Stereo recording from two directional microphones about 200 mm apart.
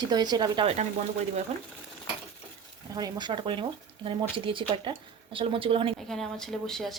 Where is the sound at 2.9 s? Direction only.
20° right (ahead or behind).